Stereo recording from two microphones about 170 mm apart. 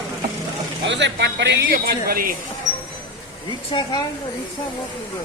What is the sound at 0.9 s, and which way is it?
A man's voice, 90° right.